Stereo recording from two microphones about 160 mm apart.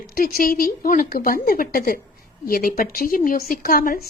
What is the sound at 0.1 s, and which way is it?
Speech, 65° left (ahead or behind).